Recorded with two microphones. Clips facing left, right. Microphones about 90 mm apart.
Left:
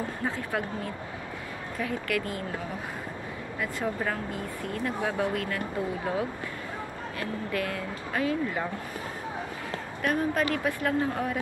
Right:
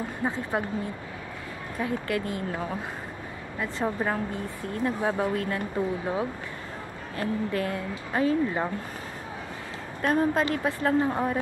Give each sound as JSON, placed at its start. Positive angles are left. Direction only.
{"t": 0.2, "sound": "speech", "side_deg": -25}
{"t": 1.8, "sound": "speech", "side_deg": -25}
{"t": 3.5, "sound": "speech", "side_deg": -25}
{"t": 7.2, "sound": "speech", "side_deg": -30}
{"t": 10.0, "sound": "speech", "side_deg": -30}